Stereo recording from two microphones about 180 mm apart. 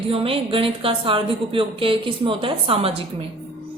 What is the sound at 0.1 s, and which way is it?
A woman's voice, 30° right (ahead or behind).